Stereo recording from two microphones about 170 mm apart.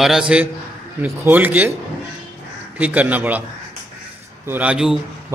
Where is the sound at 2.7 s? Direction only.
10° right (ahead or behind).